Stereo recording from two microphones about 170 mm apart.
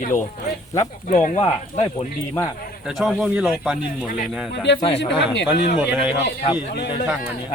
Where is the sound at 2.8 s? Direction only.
Centre (ahead or behind).